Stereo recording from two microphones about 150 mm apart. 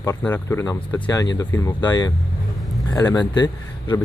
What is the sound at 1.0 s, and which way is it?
Speech, 25° left (ahead or behind).